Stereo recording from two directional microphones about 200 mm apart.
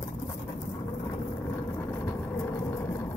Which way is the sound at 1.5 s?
15° left (ahead or behind).